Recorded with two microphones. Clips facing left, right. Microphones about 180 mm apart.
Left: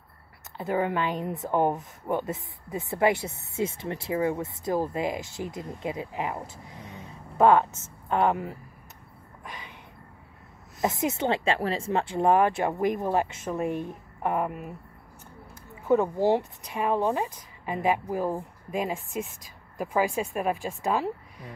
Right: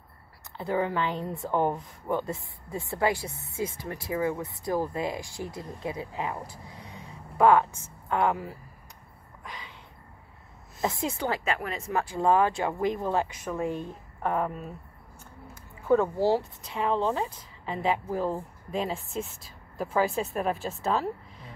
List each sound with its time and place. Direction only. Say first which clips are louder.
0.6 s a woman's voice: left 1 dB; 20° left (ahead or behind)
9.4 s a sound: left 1 dB; 20° left (ahead or behind)
10.8 s a woman's voice: left 3 dB; 20° left (ahead or behind)
15.9 s speech: left 1 dB; 20° left (ahead or behind)